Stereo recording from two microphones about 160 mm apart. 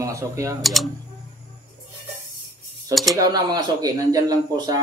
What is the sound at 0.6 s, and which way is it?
Speech, centre (ahead or behind).